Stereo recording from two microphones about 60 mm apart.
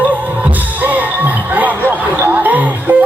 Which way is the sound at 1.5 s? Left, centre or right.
Right.